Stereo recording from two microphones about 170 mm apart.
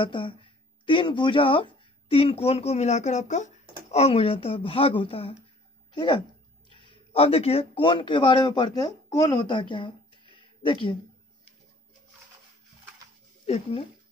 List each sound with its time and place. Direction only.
0.0 s speech: 30° left (ahead or behind)
13.5 s speech: 35° left (ahead or behind)